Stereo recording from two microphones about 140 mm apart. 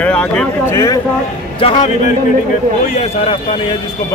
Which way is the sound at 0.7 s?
20° left (ahead or behind).